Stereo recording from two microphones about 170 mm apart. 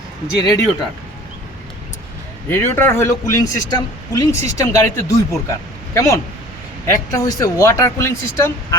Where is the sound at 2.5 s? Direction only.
10° left (ahead or behind).